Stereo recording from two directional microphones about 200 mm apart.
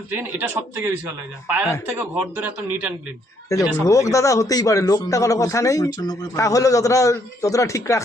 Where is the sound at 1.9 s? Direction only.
10° right (ahead or behind).